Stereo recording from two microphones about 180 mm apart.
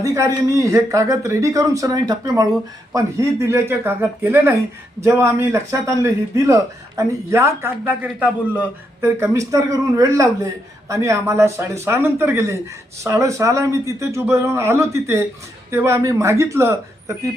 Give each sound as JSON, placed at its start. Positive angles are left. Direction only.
{"t": 0.0, "sound": "a man's voice", "side_deg": -20}